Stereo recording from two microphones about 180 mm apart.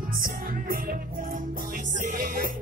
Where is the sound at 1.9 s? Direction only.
50° right (ahead or behind).